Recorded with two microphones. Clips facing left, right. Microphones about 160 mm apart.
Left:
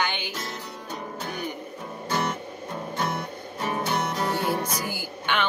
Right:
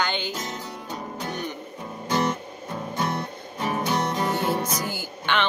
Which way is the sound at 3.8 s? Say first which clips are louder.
Right 2 dB; 20° right (ahead or behind).